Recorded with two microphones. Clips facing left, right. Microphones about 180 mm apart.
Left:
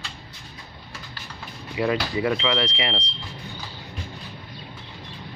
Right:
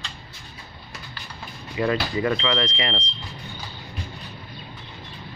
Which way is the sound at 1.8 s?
10° left (ahead or behind).